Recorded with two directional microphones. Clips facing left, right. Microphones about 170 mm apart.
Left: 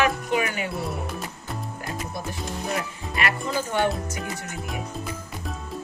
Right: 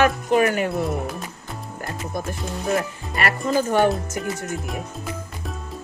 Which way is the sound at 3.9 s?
Centre (ahead or behind).